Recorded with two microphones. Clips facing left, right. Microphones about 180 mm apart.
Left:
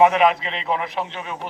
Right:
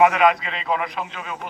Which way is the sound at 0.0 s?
25° left (ahead or behind).